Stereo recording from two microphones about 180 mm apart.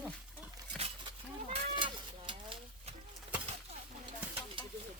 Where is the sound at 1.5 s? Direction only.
25° right (ahead or behind).